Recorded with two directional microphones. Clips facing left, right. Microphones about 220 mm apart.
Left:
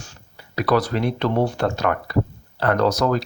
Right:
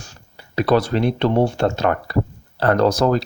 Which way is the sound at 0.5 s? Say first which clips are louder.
Right 3 dB; 25° right (ahead or behind).